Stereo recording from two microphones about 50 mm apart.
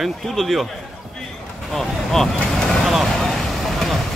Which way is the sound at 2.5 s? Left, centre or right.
Centre.